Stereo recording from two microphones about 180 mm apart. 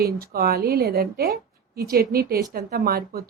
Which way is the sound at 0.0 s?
55° right (ahead or behind).